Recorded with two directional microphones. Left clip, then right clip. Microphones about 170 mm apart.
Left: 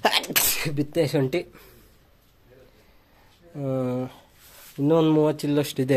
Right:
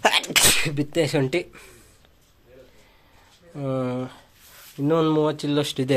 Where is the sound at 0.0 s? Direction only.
Centre (ahead or behind).